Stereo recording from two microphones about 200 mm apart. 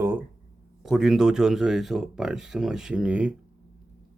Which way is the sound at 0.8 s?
Centre (ahead or behind).